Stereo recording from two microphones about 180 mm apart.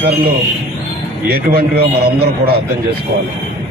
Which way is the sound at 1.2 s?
60° right (ahead or behind).